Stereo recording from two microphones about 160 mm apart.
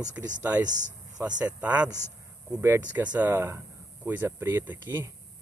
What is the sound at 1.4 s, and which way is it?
Speech, 10° right (ahead or behind).